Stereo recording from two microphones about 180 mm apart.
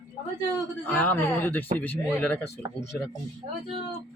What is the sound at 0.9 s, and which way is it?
A man's voice, 10° left (ahead or behind).